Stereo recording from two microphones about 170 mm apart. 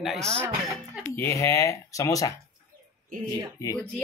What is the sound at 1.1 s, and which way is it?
Speech, 15° left (ahead or behind).